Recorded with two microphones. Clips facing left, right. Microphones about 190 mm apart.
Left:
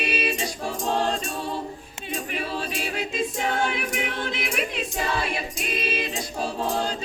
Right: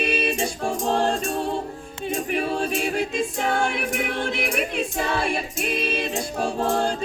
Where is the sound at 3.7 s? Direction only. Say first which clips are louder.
Right 3 dB; 50° right (ahead or behind).